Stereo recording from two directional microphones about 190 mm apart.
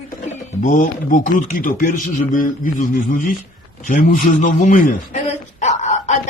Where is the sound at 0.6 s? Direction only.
45° left (ahead or behind).